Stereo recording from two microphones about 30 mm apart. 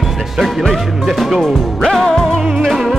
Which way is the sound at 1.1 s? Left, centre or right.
Centre.